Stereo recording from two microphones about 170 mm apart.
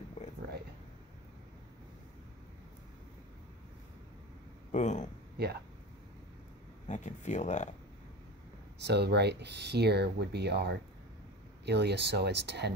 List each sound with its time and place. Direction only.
0.2 s a sound: 45° left (ahead or behind)
4.7 s speech: 45° left (ahead or behind)
6.9 s speech: 45° left (ahead or behind)
8.7 s speech: 80° right